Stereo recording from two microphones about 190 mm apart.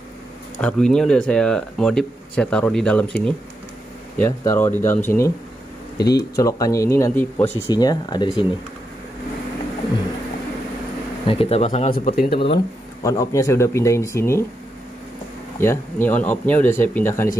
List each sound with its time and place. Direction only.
0.6 s speech: 5° left (ahead or behind); by 8.5 s 25° left (ahead or behind)
11.2 s speech: 30° left (ahead or behind)
12.0 s speech: 45° left (ahead or behind)
13.0 s speech: 15° left (ahead or behind)
15.6 s speech: 10° left (ahead or behind)